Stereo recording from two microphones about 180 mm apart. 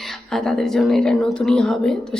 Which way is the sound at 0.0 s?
Centre (ahead or behind).